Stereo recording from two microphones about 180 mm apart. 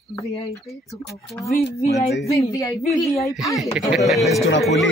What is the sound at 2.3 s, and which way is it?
Speech, 15° left (ahead or behind).